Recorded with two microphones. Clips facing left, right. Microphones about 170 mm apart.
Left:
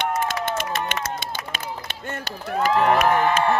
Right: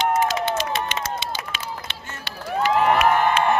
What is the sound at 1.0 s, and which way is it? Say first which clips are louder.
Run: right 1 dB; 50° left (ahead or behind).